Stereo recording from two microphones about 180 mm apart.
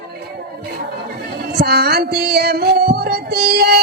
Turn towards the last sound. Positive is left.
turn(degrees=-65)  # may be behind; listen again after turning